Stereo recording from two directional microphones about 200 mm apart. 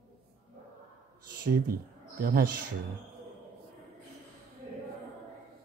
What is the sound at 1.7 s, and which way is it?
Speech, 45° right (ahead or behind).